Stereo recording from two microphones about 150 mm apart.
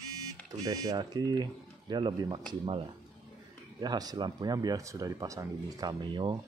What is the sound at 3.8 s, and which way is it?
Speech, 25° right (ahead or behind).